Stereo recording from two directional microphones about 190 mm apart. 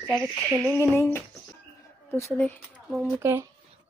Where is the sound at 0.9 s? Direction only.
15° left (ahead or behind).